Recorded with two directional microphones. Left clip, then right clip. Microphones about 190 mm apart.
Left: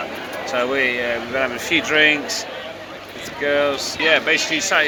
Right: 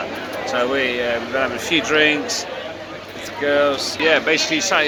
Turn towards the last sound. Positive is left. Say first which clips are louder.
# even
turn(degrees=0)  # may be behind; listen again after turning